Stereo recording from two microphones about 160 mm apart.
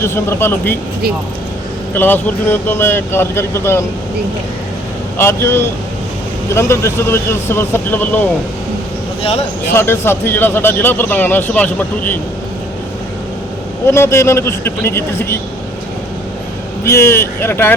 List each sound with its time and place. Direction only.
0.0 s speech: 15° left (ahead or behind)
2.0 s speech: 10° left (ahead or behind)
5.1 s speech: 15° left (ahead or behind)
9.7 s speech: 15° left (ahead or behind)
13.8 s speech: 15° left (ahead or behind)
16.8 s speech: 15° left (ahead or behind)